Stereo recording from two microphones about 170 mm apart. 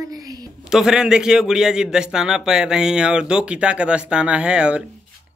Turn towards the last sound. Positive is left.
turn(degrees=-5)  # may be behind; listen again after turning